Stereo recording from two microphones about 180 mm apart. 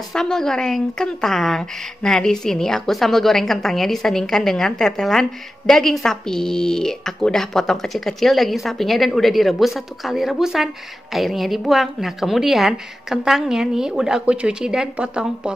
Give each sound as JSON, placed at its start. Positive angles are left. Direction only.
{"t": 0.1, "sound": "speech", "side_deg": 5}